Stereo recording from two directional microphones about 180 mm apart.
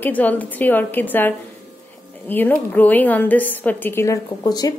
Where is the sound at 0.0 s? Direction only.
10° left (ahead or behind).